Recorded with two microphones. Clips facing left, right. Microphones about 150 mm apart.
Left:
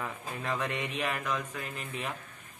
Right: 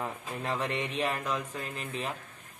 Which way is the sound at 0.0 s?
35° right (ahead or behind).